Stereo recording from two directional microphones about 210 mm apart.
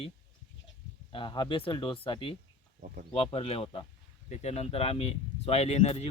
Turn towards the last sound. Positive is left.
turn(degrees=30)  # may be behind; listen again after turning